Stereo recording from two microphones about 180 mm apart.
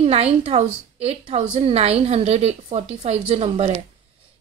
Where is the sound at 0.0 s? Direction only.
35° right (ahead or behind).